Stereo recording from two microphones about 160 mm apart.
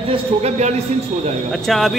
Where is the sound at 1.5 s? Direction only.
Centre (ahead or behind).